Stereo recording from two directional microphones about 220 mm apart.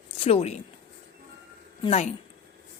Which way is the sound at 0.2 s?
25° left (ahead or behind).